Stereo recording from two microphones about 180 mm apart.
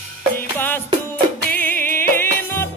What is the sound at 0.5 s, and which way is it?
Music, 10° left (ahead or behind).